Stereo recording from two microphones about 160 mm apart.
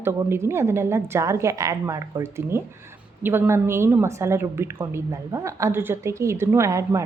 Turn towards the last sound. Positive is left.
turn(degrees=-20)  # may be behind; listen again after turning